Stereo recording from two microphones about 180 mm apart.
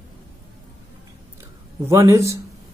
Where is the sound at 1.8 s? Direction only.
15° right (ahead or behind).